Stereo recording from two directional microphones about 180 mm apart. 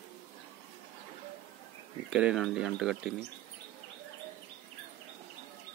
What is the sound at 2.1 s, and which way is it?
Speech, 5° right (ahead or behind).